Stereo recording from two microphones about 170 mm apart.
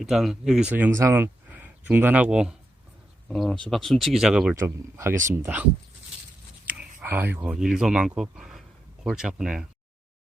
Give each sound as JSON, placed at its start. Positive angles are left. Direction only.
{"t": 0.0, "sound": "speech", "side_deg": 0}
{"t": 4.5, "sound": "speech", "side_deg": -15}
{"t": 6.7, "sound": "speech", "side_deg": -10}